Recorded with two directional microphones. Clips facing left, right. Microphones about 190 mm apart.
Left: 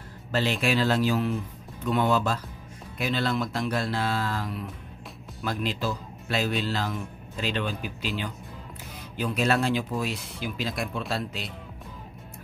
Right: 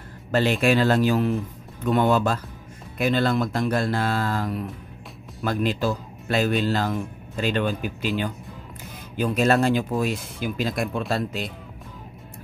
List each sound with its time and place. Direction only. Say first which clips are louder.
0.3 s a man's voice: right 5 dB; 55° right (ahead or behind)
9.1 s a man's voice: right 5 dB; 45° right (ahead or behind)